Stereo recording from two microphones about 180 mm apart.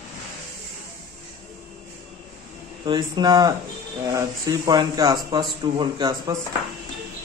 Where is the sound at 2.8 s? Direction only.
25° right (ahead or behind).